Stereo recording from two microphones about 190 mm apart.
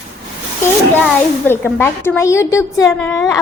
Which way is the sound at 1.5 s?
10° left (ahead or behind).